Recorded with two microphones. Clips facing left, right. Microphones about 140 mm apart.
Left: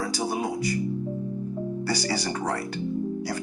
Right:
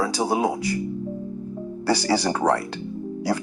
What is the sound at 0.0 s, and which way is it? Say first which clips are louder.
Speech: right 6 dB; 65° right (ahead or behind).